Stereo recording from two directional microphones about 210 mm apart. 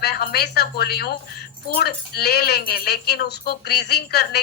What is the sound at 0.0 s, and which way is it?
Speech, 50° left (ahead or behind).